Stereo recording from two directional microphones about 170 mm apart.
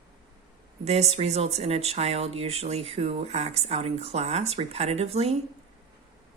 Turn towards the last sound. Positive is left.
turn(degrees=-35)  # may be behind; listen again after turning